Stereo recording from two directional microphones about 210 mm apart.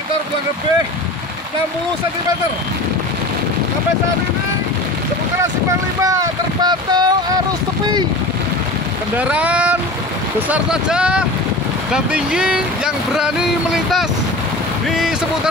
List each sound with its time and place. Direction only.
5.4 s speech: 15° right (ahead or behind)
9.1 s speech: 5° right (ahead or behind)